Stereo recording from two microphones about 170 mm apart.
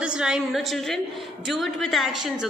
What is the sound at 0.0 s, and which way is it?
A woman's voice, 5° right (ahead or behind).